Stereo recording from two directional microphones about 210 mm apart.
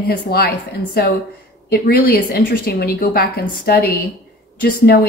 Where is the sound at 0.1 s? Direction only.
45° left (ahead or behind).